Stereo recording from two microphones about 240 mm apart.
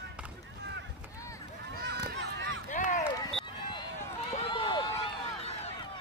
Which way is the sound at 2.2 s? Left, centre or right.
Right.